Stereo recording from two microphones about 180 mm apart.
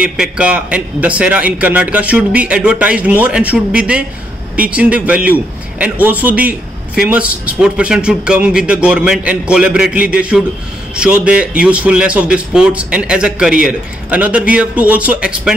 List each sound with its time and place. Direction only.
0.0 s a man's voice: 5° right (ahead or behind)